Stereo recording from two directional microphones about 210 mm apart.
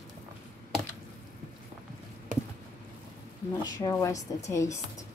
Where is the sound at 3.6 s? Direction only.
15° left (ahead or behind).